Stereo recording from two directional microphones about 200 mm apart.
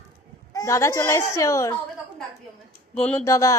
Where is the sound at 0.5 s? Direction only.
15° left (ahead or behind).